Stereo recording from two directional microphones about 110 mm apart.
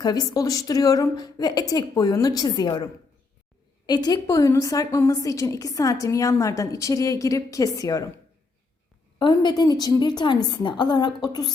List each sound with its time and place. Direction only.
0.0 s a woman's voice: 35° left (ahead or behind)
9.1 s a woman's voice: 45° left (ahead or behind)